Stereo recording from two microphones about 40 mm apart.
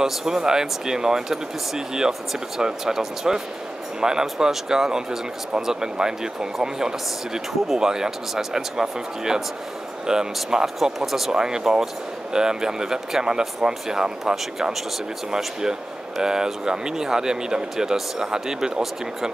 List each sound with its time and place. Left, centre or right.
0.0 s speech: centre
10.8 s speech: centre
16.2 s speech: centre